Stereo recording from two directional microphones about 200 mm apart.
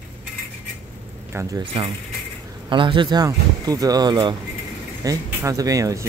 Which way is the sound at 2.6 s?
25° right (ahead or behind).